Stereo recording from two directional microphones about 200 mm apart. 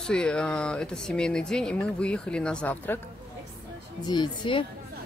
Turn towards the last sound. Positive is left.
turn(degrees=25)  # may be behind; listen again after turning